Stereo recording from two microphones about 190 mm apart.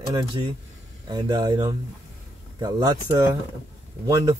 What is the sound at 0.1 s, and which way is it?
A man's voice, 20° right (ahead or behind).